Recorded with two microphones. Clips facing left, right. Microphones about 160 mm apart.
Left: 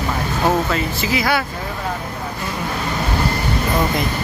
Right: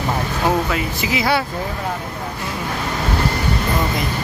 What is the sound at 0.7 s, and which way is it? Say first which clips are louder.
Speech: left 1 dB; 15° right (ahead or behind).